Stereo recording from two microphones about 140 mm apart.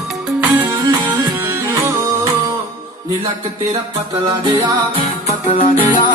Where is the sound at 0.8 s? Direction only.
30° right (ahead or behind).